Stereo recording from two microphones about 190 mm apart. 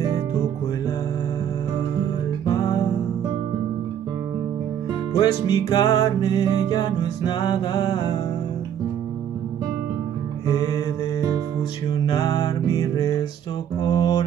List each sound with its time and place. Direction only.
2.0 s music: 15° left (ahead or behind)
5.2 s music: 20° left (ahead or behind)
11.9 s music: 20° left (ahead or behind)